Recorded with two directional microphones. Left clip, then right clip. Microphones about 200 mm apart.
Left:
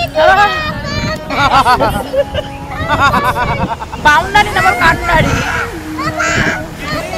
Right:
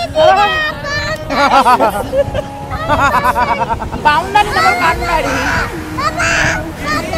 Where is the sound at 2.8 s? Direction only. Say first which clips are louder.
Even; 50° right (ahead or behind).